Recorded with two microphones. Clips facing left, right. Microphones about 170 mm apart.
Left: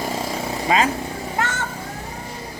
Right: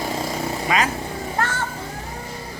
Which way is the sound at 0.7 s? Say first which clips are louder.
Left 3 dB; 30° left (ahead or behind).